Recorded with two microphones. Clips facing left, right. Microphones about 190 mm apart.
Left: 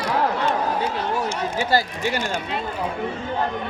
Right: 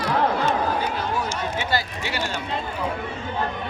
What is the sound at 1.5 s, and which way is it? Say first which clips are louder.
Speech: left 4 dB; 45° left (ahead or behind).